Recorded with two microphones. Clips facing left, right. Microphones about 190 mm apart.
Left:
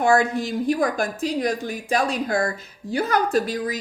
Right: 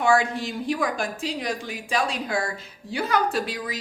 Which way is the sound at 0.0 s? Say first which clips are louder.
Left 3 dB; 45° left (ahead or behind).